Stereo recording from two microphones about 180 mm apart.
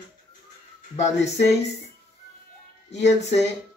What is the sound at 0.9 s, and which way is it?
Speech, 40° left (ahead or behind).